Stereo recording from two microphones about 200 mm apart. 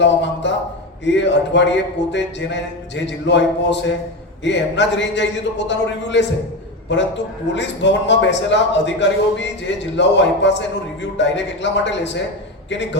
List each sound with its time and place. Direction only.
0.0 s a man's voice: 60° left (ahead or behind)